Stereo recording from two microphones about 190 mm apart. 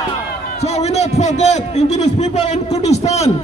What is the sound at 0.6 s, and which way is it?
A man's voice, 35° left (ahead or behind).